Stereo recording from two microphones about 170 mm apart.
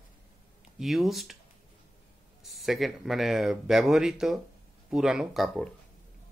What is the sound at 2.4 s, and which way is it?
Speech, centre (ahead or behind).